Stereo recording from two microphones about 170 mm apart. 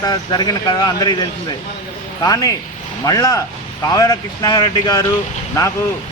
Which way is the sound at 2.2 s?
20° left (ahead or behind).